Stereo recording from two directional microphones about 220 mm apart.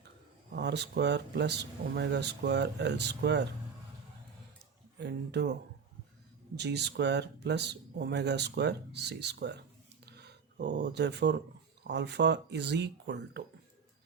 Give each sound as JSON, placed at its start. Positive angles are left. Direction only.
{"t": 0.5, "sound": "speech", "side_deg": -50}
{"t": 4.9, "sound": "speech", "side_deg": -50}
{"t": 6.6, "sound": "speech", "side_deg": -50}
{"t": 10.1, "sound": "a sound", "side_deg": -50}
{"t": 11.8, "sound": "speech", "side_deg": -50}